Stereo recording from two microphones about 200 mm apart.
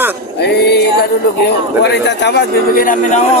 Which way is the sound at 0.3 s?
55° left (ahead or behind).